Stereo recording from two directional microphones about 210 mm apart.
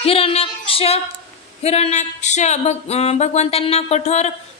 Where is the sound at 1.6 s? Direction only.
30° left (ahead or behind).